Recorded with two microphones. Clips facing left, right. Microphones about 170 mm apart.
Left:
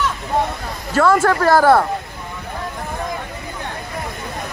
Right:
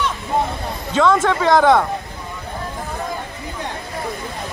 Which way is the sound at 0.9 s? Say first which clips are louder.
Left 1 dB; 5° left (ahead or behind).